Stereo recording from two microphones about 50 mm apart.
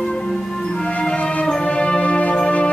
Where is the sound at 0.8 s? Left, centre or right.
Left.